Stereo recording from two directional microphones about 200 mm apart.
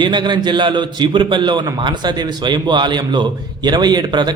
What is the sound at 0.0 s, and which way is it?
A man's voice, 20° right (ahead or behind).